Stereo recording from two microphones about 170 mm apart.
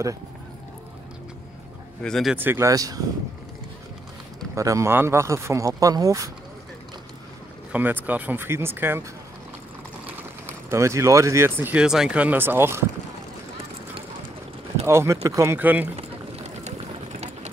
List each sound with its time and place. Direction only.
2.0 s speech: centre (ahead or behind)
2.3 s speech: 15° right (ahead or behind)
4.6 s speech: 20° right (ahead or behind)
7.7 s speech: 10° right (ahead or behind)
10.4 s speech: 15° right (ahead or behind)
14.9 s speech: 15° right (ahead or behind)
16.0 s a sound: 40° right (ahead or behind)